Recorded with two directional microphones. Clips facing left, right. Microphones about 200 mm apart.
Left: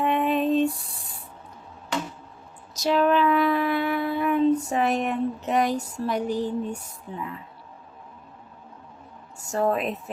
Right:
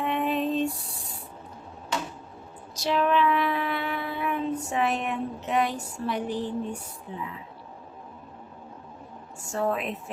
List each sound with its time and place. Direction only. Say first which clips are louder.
0.0 s a sound: left 4 dB; 55° left (ahead or behind)
2.7 s speech: left 3 dB; 40° left (ahead or behind)
9.5 s speech: left 4 dB; 40° left (ahead or behind)